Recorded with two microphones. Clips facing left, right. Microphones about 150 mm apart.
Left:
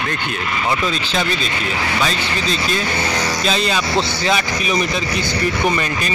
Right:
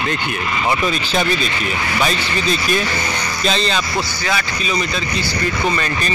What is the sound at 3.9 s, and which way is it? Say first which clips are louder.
Speech: left 3 dB; 25° left (ahead or behind).